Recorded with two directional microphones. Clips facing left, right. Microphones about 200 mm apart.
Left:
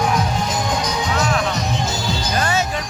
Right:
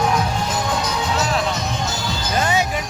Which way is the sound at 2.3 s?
20° right (ahead or behind).